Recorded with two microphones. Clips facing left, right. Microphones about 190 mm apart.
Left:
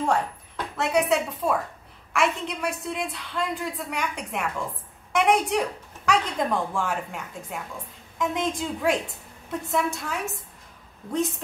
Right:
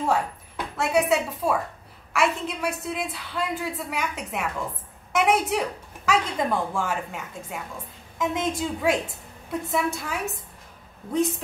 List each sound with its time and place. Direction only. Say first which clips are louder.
0.0 s a woman's voice: even; 5° right (ahead or behind)